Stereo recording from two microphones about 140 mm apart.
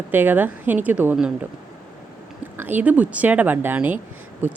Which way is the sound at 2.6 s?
15° right (ahead or behind).